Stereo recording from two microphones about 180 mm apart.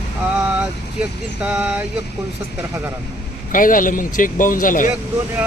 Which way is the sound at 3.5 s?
50° left (ahead or behind).